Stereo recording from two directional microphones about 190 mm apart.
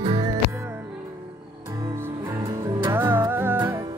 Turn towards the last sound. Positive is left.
turn(degrees=-10)  # may be behind; listen again after turning